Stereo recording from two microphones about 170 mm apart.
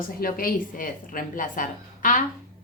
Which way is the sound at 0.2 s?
60° left (ahead or behind).